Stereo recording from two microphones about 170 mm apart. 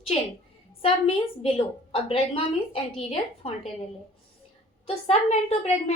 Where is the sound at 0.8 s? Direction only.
35° left (ahead or behind).